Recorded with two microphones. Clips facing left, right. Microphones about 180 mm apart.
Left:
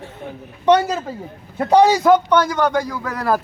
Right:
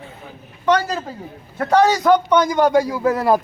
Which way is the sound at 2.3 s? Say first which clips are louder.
Right 2 dB; 20° right (ahead or behind).